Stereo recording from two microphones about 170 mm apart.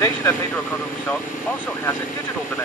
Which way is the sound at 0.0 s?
15° left (ahead or behind).